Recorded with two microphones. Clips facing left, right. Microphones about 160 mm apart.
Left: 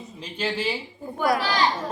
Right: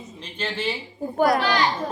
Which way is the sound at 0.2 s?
10° left (ahead or behind).